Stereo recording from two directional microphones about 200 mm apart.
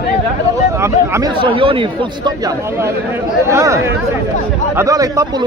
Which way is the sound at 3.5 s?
15° right (ahead or behind).